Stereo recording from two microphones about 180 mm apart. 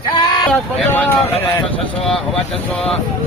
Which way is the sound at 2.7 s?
5° left (ahead or behind).